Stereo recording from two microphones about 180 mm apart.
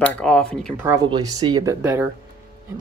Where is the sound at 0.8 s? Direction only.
15° right (ahead or behind).